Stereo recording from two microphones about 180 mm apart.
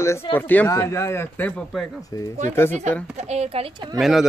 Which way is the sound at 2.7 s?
40° right (ahead or behind).